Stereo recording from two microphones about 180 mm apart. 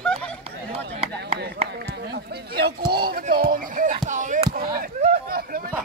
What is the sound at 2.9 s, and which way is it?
Speech, 60° right (ahead or behind).